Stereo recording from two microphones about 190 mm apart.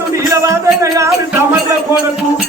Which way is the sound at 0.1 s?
15° right (ahead or behind).